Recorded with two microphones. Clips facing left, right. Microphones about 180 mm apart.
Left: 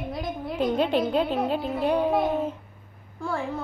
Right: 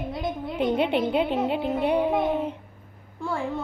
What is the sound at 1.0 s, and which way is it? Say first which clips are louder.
Music: even; 20° right (ahead or behind).